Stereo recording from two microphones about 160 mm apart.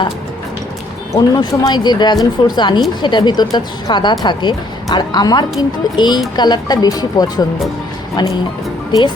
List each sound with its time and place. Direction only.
1.1 s speech: 25° left (ahead or behind)